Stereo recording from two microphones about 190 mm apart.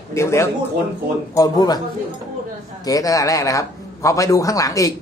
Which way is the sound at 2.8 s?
20° left (ahead or behind).